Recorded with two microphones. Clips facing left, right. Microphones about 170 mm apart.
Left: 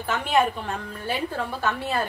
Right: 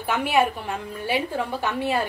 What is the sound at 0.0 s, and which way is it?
A woman's voice, 10° right (ahead or behind).